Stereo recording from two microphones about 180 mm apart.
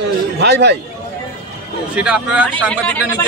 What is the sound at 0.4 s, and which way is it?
Speech, 70° right (ahead or behind).